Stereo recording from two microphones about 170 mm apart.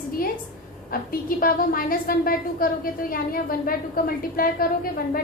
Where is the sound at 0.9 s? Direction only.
55° left (ahead or behind).